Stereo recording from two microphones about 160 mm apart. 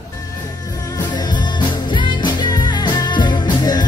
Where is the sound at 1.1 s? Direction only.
25° left (ahead or behind).